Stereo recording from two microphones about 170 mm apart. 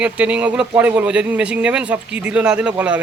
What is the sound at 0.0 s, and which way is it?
Speech, 10° right (ahead or behind).